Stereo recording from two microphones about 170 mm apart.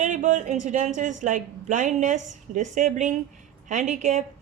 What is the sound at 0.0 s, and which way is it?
A woman's voice, 45° right (ahead or behind).